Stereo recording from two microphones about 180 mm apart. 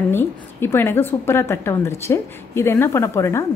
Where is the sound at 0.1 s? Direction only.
10° left (ahead or behind).